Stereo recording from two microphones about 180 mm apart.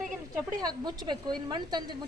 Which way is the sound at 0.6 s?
20° right (ahead or behind).